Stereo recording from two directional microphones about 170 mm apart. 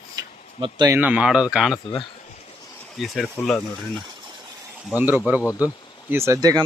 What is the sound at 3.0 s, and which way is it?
Speech, 5° left (ahead or behind).